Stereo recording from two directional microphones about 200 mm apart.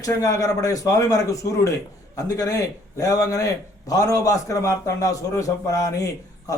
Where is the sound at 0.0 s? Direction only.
15° left (ahead or behind).